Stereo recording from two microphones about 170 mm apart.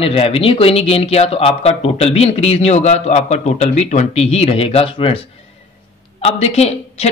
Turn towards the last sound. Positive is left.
turn(degrees=40)  # may be behind; listen again after turning